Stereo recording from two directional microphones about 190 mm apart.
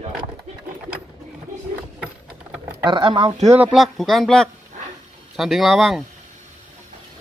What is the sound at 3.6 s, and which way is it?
A man's voice, 5° right (ahead or behind).